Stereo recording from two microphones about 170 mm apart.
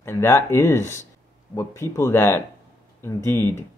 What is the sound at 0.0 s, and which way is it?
Speech, 15° left (ahead or behind).